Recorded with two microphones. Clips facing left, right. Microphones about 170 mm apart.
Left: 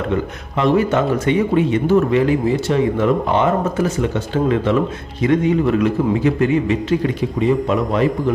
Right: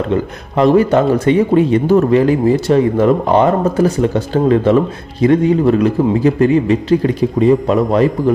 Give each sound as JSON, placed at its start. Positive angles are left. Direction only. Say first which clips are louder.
{"t": 0.6, "sound": "a man's voice", "louder": "right 5 dB", "side_deg": -35}